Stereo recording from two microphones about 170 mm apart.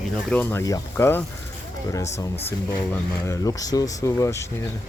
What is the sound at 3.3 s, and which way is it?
Speech, 20° left (ahead or behind).